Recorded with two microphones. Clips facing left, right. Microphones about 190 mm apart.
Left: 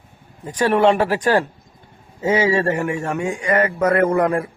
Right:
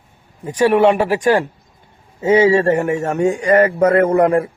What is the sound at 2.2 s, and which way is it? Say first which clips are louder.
Speech: right 5 dB; 30° right (ahead or behind).